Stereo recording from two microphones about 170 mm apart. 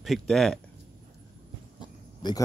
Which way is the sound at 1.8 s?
25° left (ahead or behind).